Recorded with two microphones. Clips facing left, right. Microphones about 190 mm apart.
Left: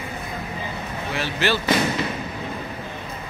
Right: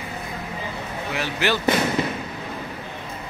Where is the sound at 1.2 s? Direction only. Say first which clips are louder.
Even; 15° right (ahead or behind).